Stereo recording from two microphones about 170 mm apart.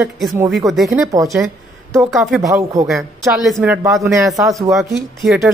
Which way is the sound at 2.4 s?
20° right (ahead or behind).